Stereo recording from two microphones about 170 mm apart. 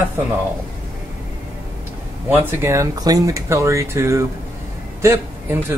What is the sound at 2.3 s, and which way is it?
A man's voice, 15° right (ahead or behind).